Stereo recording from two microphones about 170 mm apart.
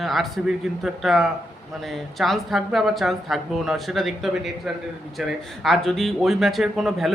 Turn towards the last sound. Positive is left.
turn(degrees=0)  # may be behind; listen again after turning